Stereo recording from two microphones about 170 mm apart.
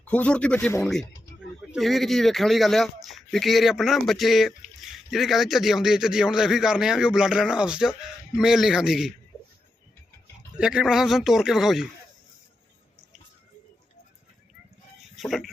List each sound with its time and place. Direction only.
0.0 s speech: 10° left (ahead or behind)
1.7 s speech: centre (ahead or behind)
10.6 s speech: 5° right (ahead or behind)
15.1 s speech: centre (ahead or behind)